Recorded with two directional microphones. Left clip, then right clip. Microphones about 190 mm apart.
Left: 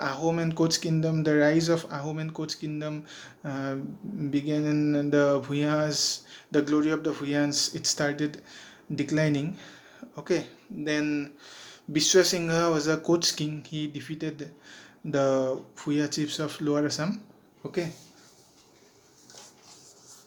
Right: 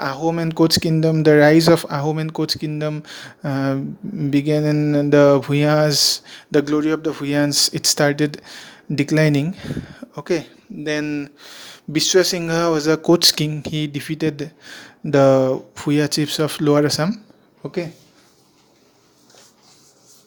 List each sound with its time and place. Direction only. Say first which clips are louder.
0.0 s speech: right 6 dB; 45° right (ahead or behind)
17.6 s speech: right 6 dB; 40° right (ahead or behind)